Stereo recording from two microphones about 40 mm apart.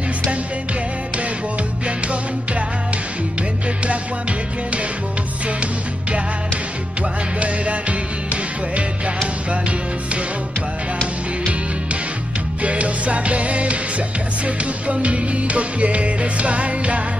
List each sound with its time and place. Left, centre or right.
1.9 s music: right
7.0 s music: right
12.6 s music: right